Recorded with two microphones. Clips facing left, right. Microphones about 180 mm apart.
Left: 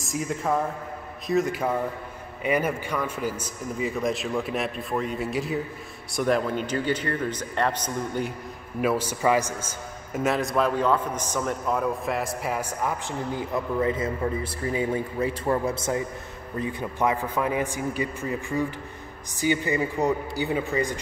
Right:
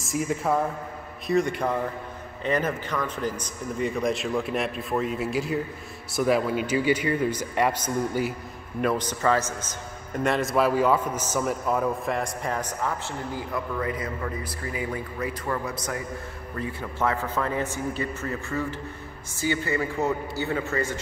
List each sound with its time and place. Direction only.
0.0 s a man's voice: centre (ahead or behind)
8.8 s a man's voice: 10° left (ahead or behind)
13.3 s a man's voice: 20° left (ahead or behind)